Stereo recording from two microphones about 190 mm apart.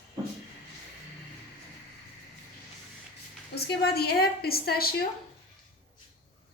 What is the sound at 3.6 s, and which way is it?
A woman's voice, 55° left (ahead or behind).